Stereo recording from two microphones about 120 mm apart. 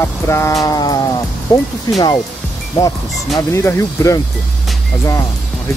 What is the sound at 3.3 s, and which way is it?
Speech, 25° left (ahead or behind).